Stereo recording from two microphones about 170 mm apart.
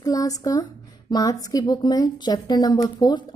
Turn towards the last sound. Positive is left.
turn(degrees=25)  # may be behind; listen again after turning